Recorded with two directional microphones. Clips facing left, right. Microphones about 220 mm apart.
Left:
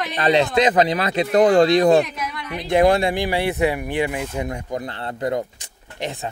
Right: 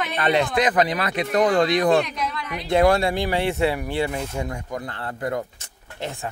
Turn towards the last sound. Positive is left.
turn(degrees=20)  # may be behind; listen again after turning